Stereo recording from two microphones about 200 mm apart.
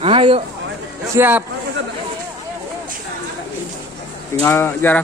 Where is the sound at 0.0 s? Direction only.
25° right (ahead or behind).